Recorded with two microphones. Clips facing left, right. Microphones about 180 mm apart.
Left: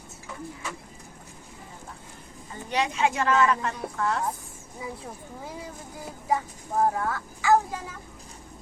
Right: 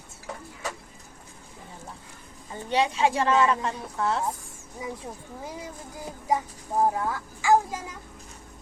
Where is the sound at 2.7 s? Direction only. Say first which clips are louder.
Right 2 dB; 30° right (ahead or behind).